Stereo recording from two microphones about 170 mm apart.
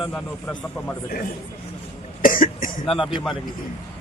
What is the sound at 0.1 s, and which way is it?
Speech, 10° left (ahead or behind).